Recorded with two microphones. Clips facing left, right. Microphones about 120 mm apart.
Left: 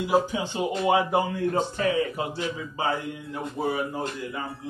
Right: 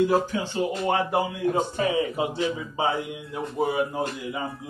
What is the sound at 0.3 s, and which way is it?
Speech, 20° left (ahead or behind).